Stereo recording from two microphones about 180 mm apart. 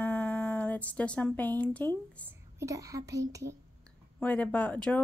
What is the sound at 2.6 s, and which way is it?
Speech, 20° right (ahead or behind).